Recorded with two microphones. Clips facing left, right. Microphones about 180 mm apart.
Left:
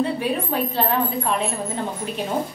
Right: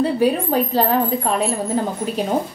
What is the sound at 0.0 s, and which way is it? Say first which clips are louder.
A woman's voice: right 5 dB; 35° right (ahead or behind).